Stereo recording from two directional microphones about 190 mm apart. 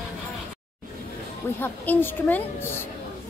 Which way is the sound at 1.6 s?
10° left (ahead or behind).